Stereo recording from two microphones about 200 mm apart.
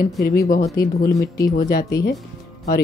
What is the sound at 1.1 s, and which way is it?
Speech, 15° left (ahead or behind).